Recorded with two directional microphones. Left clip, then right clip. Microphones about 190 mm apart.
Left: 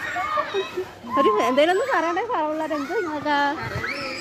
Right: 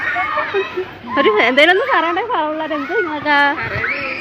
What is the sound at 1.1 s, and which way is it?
Speech, centre (ahead or behind).